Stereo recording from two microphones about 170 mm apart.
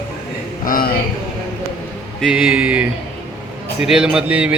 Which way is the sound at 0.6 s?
60° left (ahead or behind).